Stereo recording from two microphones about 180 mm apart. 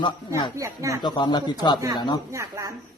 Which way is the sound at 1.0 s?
25° left (ahead or behind).